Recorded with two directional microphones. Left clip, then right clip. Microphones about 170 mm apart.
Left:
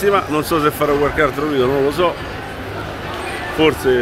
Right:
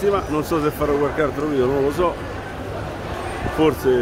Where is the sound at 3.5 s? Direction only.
10° right (ahead or behind).